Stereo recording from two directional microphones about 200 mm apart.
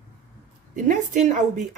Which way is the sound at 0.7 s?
40° right (ahead or behind).